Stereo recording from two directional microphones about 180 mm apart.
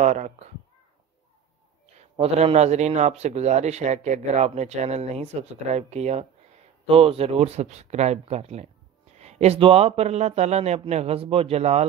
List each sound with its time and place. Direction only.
0.0 s a man's voice: 40° right (ahead or behind)
2.0 s a man's voice: 35° right (ahead or behind)